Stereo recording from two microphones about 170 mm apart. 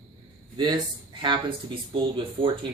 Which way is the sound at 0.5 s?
25° right (ahead or behind).